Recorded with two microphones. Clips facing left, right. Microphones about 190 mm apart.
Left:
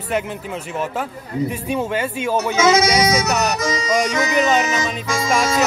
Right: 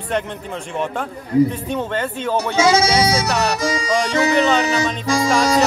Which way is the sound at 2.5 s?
30° right (ahead or behind).